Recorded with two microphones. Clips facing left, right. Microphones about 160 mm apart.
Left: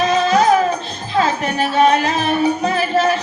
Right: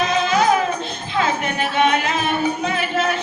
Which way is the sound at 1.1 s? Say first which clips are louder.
Left 4 dB; 35° left (ahead or behind).